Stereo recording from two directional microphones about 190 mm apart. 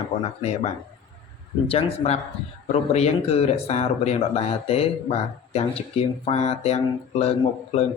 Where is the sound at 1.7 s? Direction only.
30° left (ahead or behind).